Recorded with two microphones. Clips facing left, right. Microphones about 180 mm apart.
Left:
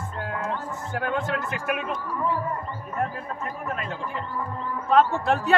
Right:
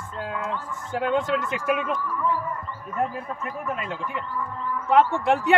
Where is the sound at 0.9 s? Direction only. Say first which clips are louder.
Right 4 dB; 20° right (ahead or behind).